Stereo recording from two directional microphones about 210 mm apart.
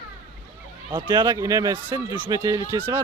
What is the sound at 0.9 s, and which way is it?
Speech, 15° right (ahead or behind).